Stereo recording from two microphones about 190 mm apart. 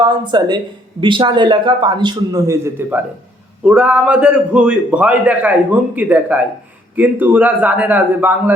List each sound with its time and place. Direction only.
0.0 s a man's voice: 25° right (ahead or behind)